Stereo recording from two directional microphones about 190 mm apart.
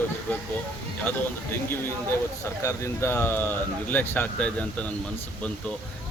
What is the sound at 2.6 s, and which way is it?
Speech, 15° left (ahead or behind).